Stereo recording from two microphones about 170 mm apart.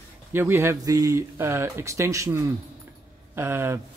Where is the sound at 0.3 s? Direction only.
15° right (ahead or behind).